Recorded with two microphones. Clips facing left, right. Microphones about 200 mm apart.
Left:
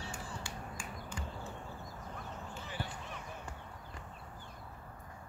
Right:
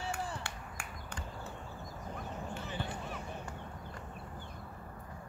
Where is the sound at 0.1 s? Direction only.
65° right (ahead or behind).